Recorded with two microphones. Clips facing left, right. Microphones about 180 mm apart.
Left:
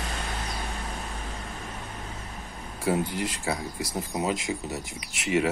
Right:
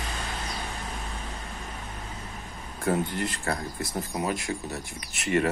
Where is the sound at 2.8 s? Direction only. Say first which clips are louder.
Even; 10° left (ahead or behind).